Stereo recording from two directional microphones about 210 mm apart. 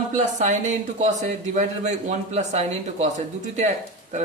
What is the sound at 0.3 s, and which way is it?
A man's voice, 35° right (ahead or behind).